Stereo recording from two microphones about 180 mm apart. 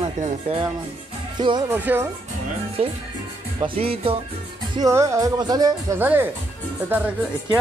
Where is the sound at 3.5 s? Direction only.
30° right (ahead or behind).